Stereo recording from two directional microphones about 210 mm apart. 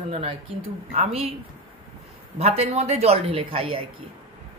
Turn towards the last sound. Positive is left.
turn(degrees=-25)  # may be behind; listen again after turning